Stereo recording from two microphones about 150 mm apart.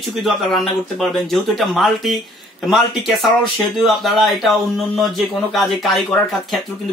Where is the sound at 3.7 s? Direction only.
Centre (ahead or behind).